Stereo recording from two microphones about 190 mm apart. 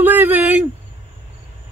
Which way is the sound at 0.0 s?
10° right (ahead or behind).